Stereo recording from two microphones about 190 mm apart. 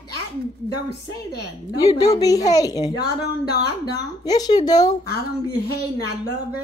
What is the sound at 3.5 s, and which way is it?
Speech, 60° left (ahead or behind).